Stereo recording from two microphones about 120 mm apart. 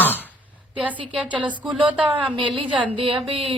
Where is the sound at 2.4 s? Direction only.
45° right (ahead or behind).